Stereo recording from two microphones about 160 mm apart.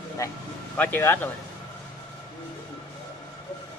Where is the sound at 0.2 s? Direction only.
20° left (ahead or behind).